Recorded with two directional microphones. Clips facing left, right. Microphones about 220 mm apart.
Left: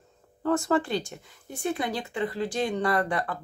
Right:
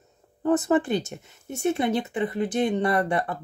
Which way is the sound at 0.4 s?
20° right (ahead or behind).